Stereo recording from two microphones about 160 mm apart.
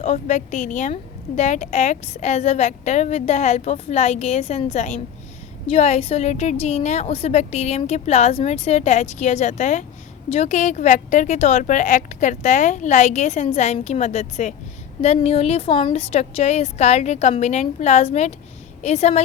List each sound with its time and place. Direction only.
0.0 s speech: 45° left (ahead or behind)